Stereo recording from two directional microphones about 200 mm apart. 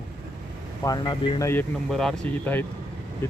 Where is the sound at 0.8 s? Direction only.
20° left (ahead or behind).